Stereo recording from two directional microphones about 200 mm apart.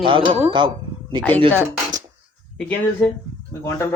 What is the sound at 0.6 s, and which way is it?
Speech, 25° right (ahead or behind).